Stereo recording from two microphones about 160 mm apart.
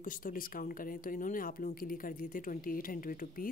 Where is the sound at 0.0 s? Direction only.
60° left (ahead or behind).